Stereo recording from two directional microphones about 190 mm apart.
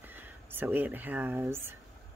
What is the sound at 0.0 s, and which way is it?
Speech, 10° right (ahead or behind).